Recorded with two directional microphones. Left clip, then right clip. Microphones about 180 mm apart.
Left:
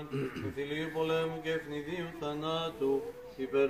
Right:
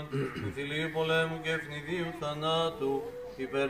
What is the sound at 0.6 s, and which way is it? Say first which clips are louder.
Mantra: right 2 dB; 20° right (ahead or behind).